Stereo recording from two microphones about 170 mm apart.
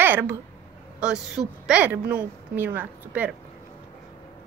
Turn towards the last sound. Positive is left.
turn(degrees=-10)  # may be behind; listen again after turning